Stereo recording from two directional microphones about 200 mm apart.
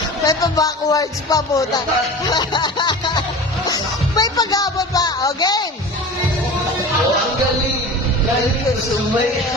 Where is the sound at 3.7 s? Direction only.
20° left (ahead or behind).